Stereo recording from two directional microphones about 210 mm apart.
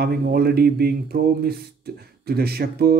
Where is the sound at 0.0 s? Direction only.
50° right (ahead or behind).